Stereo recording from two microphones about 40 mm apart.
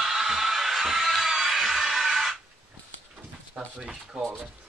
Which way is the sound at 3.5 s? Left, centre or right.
Centre.